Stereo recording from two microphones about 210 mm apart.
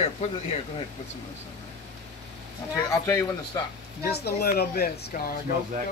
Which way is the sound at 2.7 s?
15° left (ahead or behind).